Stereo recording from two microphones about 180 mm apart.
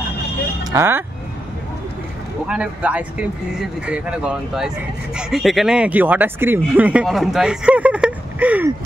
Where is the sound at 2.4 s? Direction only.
5° right (ahead or behind).